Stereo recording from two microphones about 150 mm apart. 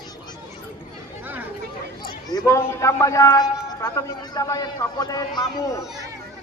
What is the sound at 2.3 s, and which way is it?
Speech, 20° left (ahead or behind).